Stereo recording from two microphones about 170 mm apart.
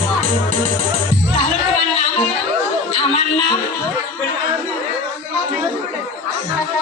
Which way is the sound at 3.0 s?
35° left (ahead or behind).